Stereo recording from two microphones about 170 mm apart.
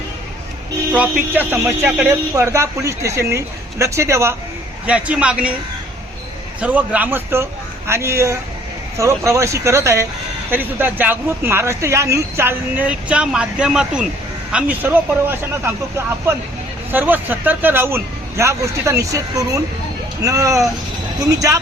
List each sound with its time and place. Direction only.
0.9 s speech: 10° right (ahead or behind)
2.0 s speech: 20° right (ahead or behind)
6.6 s speech: 10° right (ahead or behind)